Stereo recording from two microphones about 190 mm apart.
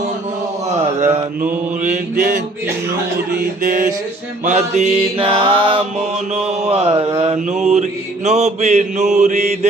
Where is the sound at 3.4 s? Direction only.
45° right (ahead or behind).